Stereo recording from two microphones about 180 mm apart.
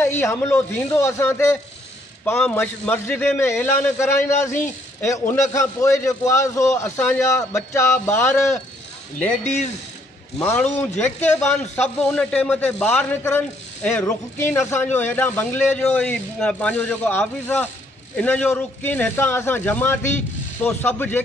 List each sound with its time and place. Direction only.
0.2 s a man's voice: 15° left (ahead or behind)
10.4 s a man's voice: 10° left (ahead or behind)